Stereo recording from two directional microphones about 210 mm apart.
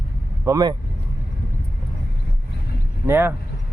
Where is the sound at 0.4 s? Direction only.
15° right (ahead or behind).